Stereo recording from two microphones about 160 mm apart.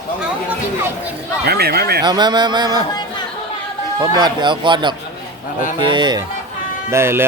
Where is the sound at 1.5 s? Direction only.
80° right.